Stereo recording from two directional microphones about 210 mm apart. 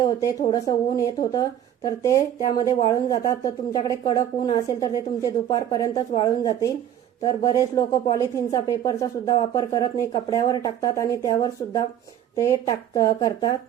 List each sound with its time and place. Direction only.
0.0 s speech: 15° left (ahead or behind)
7.8 s speech: 15° left (ahead or behind)